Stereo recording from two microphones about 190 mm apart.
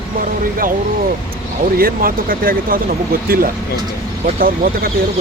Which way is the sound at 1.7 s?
50° right (ahead or behind).